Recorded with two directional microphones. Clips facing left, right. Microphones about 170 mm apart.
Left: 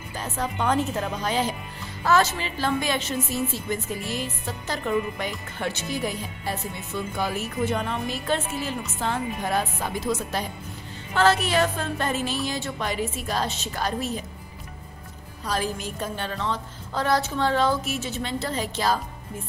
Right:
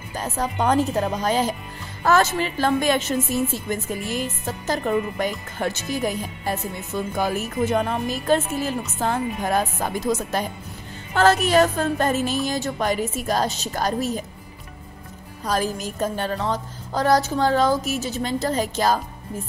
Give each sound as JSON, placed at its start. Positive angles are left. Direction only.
{"t": 0.1, "sound": "a woman's voice", "side_deg": -40}
{"t": 15.4, "sound": "a woman's voice", "side_deg": -45}